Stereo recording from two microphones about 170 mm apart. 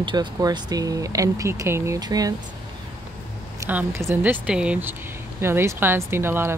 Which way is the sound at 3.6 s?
10° right (ahead or behind).